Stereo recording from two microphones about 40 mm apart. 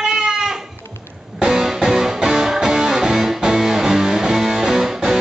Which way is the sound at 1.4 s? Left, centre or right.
Centre.